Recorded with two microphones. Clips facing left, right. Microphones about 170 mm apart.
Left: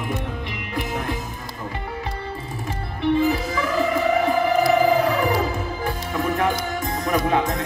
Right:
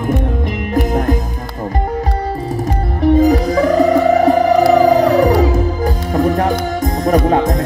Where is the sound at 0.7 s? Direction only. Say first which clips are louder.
Right 11 dB; 45° right (ahead or behind).